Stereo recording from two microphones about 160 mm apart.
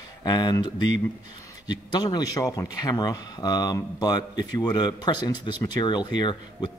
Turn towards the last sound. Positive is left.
turn(degrees=25)  # may be behind; listen again after turning